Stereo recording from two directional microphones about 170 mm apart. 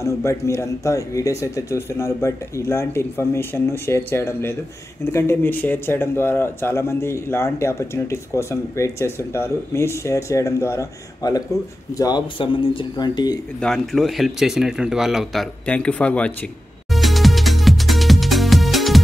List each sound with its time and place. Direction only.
0.0 s speech: 15° left (ahead or behind)
13.6 s speech: centre (ahead or behind)
16.9 s music: centre (ahead or behind)